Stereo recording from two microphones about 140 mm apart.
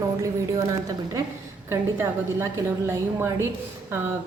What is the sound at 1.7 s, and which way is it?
A woman's voice, 20° right (ahead or behind).